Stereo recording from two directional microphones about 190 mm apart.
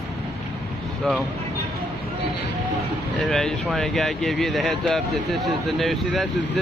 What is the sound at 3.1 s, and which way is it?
Speech, centre (ahead or behind).